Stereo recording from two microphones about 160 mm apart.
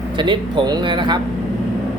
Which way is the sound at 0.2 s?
30° right (ahead or behind).